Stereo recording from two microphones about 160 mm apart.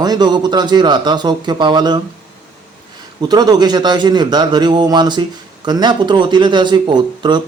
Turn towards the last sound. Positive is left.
turn(degrees=-30)  # may be behind; listen again after turning